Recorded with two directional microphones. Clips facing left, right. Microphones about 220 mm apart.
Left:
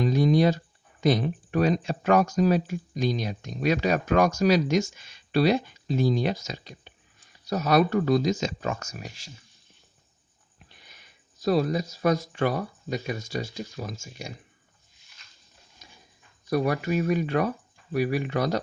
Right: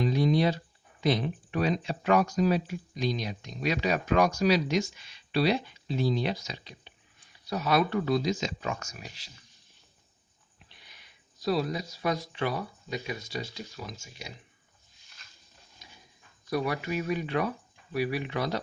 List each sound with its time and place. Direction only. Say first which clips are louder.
0.0 s a sound: left 4 dB; 45° left (ahead or behind)
1.0 s speech: left 4 dB; 45° left (ahead or behind)
10.6 s speech: left 3 dB; 45° left (ahead or behind)
16.5 s speech: left 5 dB; 45° left (ahead or behind)